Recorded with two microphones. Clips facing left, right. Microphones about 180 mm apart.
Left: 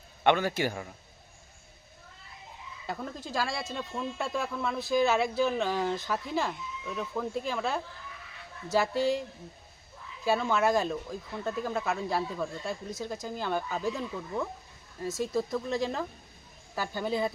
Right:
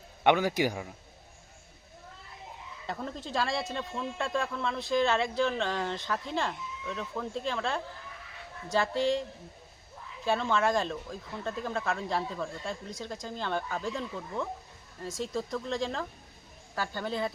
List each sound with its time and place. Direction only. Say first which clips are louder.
0.3 s a man's voice: right 1 dB; 15° right (ahead or behind)
2.8 s a man's voice: even; 5° left (ahead or behind)
10.2 s a man's voice: left 1 dB; 10° left (ahead or behind)